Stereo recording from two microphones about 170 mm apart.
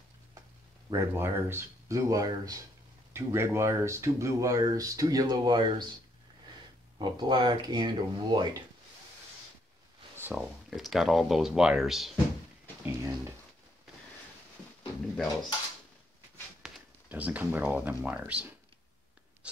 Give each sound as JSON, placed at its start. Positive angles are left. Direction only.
{"t": 0.8, "sound": "speech", "side_deg": -15}
{"t": 7.0, "sound": "speech", "side_deg": -25}
{"t": 10.1, "sound": "speech", "side_deg": -10}
{"t": 12.8, "sound": "speech", "side_deg": -15}
{"t": 16.6, "sound": "speech", "side_deg": -5}
{"t": 19.4, "sound": "writing", "side_deg": -5}